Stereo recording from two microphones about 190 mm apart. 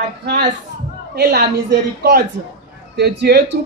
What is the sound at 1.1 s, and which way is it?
Speech, 60° right (ahead or behind).